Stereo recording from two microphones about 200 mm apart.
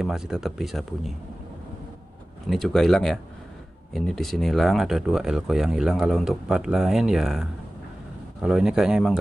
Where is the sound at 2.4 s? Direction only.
Centre (ahead or behind).